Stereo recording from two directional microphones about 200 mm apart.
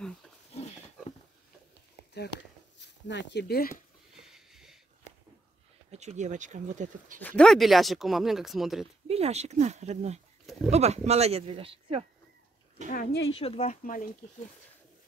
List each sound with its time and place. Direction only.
0.6 s pig: 30° left (ahead or behind)
2.8 s speech: 60° left (ahead or behind)
4.3 s a sound: centre (ahead or behind)
5.9 s speech: 35° right (ahead or behind)
7.2 s speech: 5° left (ahead or behind)
9.0 s speech: 30° right (ahead or behind)
12.9 s speech: 55° left (ahead or behind)
13.4 s speech: 30° left (ahead or behind)